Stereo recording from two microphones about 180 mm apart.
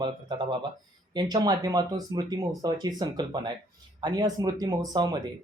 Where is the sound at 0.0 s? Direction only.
25° right (ahead or behind).